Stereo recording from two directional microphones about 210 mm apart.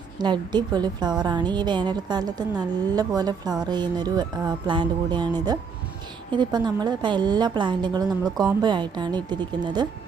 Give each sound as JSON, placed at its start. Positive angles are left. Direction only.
{"t": 0.2, "sound": "a woman's voice", "side_deg": -20}
{"t": 6.3, "sound": "a woman's voice", "side_deg": -20}